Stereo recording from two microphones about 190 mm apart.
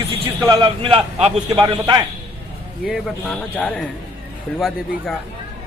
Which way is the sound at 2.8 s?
Centre (ahead or behind).